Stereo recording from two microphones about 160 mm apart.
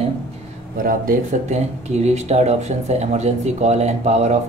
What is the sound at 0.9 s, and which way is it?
Speech, 60° right (ahead or behind).